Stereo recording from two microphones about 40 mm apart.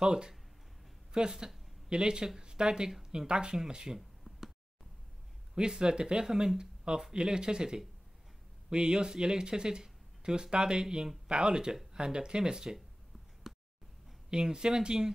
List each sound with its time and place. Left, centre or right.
0.0 s speech: right
5.5 s speech: right
13.4 s a sound: centre
14.3 s speech: right